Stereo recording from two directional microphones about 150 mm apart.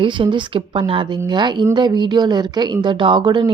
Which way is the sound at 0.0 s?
35° right (ahead or behind).